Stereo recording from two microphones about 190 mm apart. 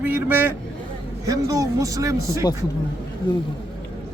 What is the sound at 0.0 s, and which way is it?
Speech, 10° right (ahead or behind).